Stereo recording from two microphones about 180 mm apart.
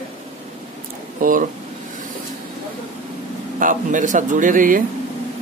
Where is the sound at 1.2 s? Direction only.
50° right (ahead or behind).